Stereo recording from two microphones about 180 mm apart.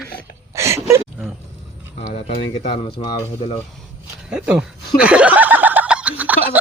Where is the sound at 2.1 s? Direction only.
35° left (ahead or behind).